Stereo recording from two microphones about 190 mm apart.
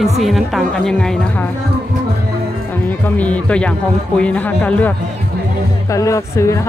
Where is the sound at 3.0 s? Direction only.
5° left (ahead or behind).